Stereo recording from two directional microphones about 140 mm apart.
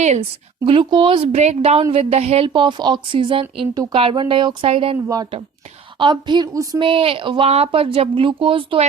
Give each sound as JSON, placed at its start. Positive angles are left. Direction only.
{"t": 0.0, "sound": "speech", "side_deg": -55}
{"t": 0.6, "sound": "a woman's voice", "side_deg": -40}
{"t": 2.5, "sound": "speech", "side_deg": -35}
{"t": 5.0, "sound": "speech", "side_deg": -25}
{"t": 6.8, "sound": "speech", "side_deg": -40}